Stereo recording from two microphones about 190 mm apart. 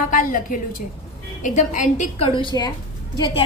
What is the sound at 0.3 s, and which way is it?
A woman's voice, 45° left (ahead or behind).